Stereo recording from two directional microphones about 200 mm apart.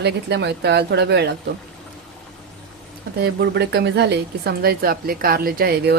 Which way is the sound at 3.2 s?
55° right (ahead or behind).